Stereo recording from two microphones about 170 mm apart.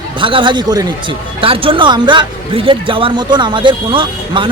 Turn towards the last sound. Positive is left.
turn(degrees=-30)  # may be behind; listen again after turning